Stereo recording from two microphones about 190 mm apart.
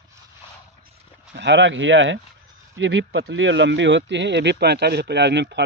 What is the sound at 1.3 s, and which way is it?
Speech, 70° right (ahead or behind).